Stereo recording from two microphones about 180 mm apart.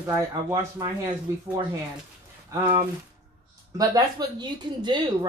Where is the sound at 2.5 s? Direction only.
25° right (ahead or behind).